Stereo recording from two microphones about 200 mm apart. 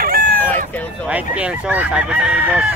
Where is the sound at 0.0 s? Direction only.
45° right (ahead or behind).